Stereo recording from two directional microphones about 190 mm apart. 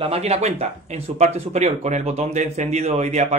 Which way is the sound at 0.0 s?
30° right (ahead or behind).